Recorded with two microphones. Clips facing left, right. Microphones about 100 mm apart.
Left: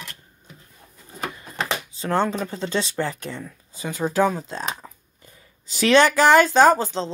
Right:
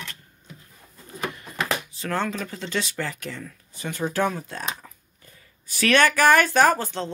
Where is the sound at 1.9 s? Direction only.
30° left (ahead or behind).